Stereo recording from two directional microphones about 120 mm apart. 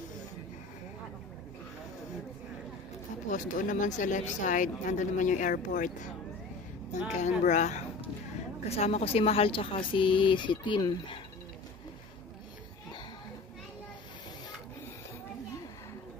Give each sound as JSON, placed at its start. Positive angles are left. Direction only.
{"t": 3.3, "sound": "a woman's voice", "side_deg": 90}
{"t": 7.2, "sound": "speech", "side_deg": 80}
{"t": 8.6, "sound": "speech", "side_deg": 60}